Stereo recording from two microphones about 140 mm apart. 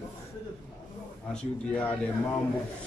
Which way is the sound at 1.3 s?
10° left (ahead or behind).